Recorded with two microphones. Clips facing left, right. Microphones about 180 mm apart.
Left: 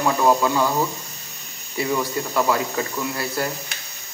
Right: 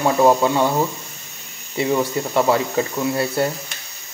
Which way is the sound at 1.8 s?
25° right (ahead or behind).